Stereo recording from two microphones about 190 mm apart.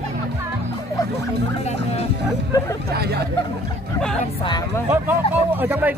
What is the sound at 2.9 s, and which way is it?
Speech, 55° right (ahead or behind).